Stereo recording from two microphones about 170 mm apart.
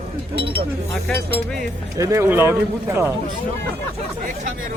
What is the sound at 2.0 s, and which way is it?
Speech, 15° right (ahead or behind).